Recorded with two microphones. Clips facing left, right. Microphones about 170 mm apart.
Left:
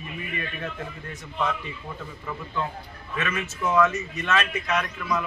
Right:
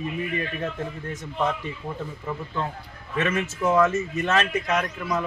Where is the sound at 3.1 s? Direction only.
30° right (ahead or behind).